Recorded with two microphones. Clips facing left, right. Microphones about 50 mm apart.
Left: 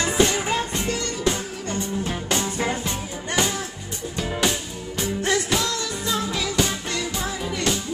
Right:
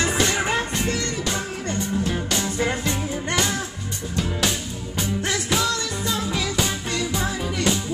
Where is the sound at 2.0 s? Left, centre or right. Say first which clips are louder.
Right 1 dB; left.